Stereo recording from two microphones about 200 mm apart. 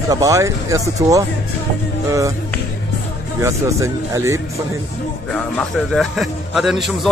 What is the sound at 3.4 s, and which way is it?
A man's voice, 15° right (ahead or behind).